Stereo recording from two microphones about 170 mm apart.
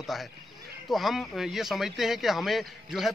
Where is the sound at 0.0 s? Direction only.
Centre (ahead or behind).